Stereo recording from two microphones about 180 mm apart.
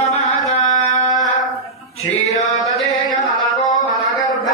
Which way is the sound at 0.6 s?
45° left (ahead or behind).